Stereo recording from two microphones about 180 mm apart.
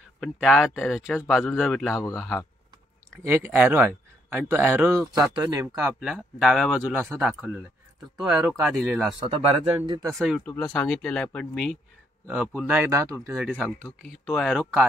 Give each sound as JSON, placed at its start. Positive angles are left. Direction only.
{"t": 0.2, "sound": "speech", "side_deg": 0}
{"t": 2.0, "sound": "speech", "side_deg": 15}
{"t": 3.3, "sound": "speech", "side_deg": -10}
{"t": 6.0, "sound": "speech", "side_deg": 0}
{"t": 9.8, "sound": "speech", "side_deg": -25}
{"t": 10.1, "sound": "speech", "side_deg": -5}
{"t": 10.4, "sound": "speech", "side_deg": 10}
{"t": 12.3, "sound": "speech", "side_deg": -10}
{"t": 13.4, "sound": "speech", "side_deg": -5}